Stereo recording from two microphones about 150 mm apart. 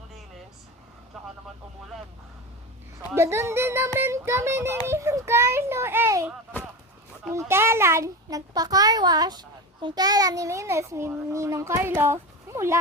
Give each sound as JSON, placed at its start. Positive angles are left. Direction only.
{"t": 1.1, "sound": "vehicle", "side_deg": 0}
{"t": 3.2, "sound": "a child's voice", "side_deg": -20}